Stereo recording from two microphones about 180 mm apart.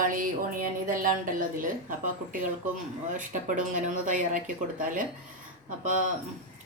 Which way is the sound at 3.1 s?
45° right (ahead or behind).